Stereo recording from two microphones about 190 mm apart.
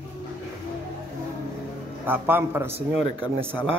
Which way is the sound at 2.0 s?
10° right (ahead or behind).